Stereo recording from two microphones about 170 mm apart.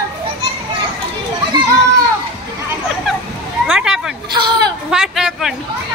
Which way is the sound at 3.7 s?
5° right (ahead or behind).